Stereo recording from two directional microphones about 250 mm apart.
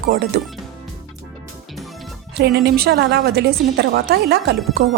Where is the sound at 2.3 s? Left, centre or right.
Right.